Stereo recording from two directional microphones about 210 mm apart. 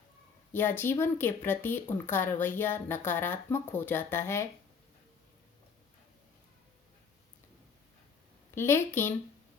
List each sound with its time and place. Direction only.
0.5 s speech: 10° left (ahead or behind)
8.5 s speech: 10° left (ahead or behind)